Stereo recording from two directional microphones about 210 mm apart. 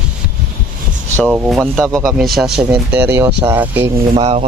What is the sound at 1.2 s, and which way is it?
Speech, 5° right (ahead or behind).